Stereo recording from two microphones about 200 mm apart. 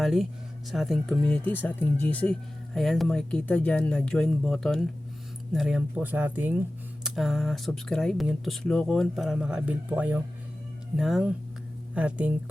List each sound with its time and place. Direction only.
0.0 s speech: centre (ahead or behind)